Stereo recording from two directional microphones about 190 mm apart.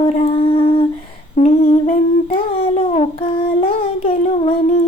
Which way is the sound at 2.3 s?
30° left (ahead or behind).